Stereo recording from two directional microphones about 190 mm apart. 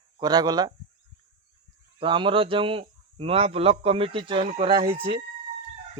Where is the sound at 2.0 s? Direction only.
25° right (ahead or behind).